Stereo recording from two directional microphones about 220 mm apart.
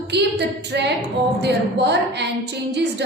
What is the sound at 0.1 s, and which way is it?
A woman's voice, 50° right (ahead or behind).